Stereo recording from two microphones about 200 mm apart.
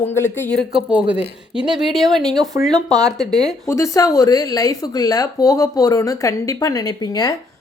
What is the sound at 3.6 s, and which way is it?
Speech, 15° left (ahead or behind).